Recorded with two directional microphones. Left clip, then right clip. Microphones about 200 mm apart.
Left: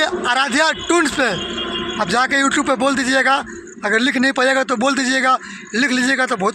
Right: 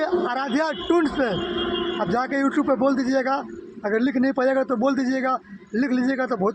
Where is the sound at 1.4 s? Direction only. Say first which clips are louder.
Left 2 dB; 50° right (ahead or behind).